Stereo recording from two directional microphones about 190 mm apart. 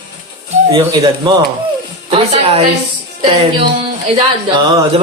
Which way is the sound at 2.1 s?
30° right (ahead or behind).